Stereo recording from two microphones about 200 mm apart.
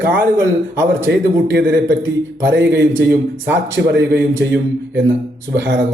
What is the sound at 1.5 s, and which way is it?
A man's voice, 60° right (ahead or behind).